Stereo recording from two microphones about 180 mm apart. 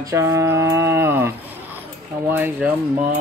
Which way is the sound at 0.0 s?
15° right (ahead or behind).